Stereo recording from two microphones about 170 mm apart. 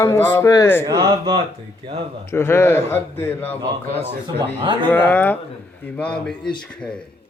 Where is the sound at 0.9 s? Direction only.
25° right (ahead or behind).